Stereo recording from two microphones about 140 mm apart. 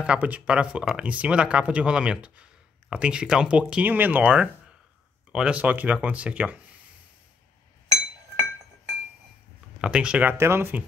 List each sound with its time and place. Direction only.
0.0 s speech: 10° right (ahead or behind)
9.8 s speech: 5° right (ahead or behind)